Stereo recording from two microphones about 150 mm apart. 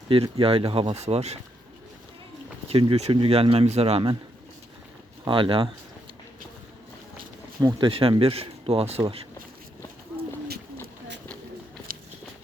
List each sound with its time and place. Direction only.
0.1 s speech: 40° right (ahead or behind)
2.6 s speech: 40° right (ahead or behind)
5.2 s speech: 35° right (ahead or behind)
7.6 s speech: 25° right (ahead or behind)
7.9 s speech: 40° right (ahead or behind)
11.9 s walk: 75° right (ahead or behind)